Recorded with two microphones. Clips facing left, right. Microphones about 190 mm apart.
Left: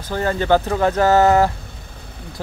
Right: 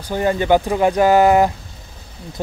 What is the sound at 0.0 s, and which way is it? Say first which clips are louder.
Speech: right 2 dB; 15° right (ahead or behind).